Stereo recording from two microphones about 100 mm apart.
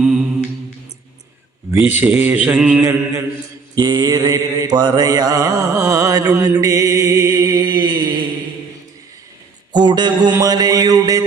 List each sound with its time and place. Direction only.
0.0 s a capella: 5° right (ahead or behind)
1.8 s a man's voice: 20° right (ahead or behind)
2.6 s mantra: 15° right (ahead or behind)
3.8 s mantra: 40° right (ahead or behind)
6.6 s music: 35° right (ahead or behind)
9.7 s mantra: 45° right (ahead or behind)